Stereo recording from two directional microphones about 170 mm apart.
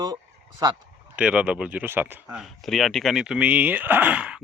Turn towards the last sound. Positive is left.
turn(degrees=-5)  # may be behind; listen again after turning